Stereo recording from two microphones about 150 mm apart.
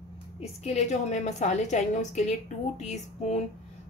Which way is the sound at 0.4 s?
45° left (ahead or behind).